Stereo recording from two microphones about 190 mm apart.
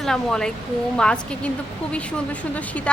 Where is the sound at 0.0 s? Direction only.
Centre (ahead or behind).